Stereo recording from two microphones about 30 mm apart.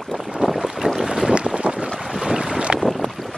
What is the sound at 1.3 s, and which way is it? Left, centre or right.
Boat, right.